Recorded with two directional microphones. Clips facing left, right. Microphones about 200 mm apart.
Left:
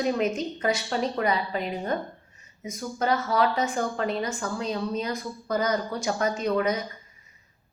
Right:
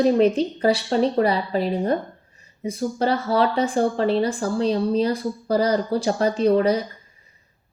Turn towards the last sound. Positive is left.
turn(degrees=-35)  # may be behind; listen again after turning